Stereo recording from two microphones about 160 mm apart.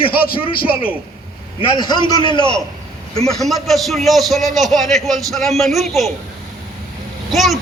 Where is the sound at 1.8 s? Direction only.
25° left (ahead or behind).